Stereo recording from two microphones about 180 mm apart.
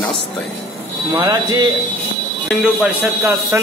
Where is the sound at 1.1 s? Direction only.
25° right (ahead or behind).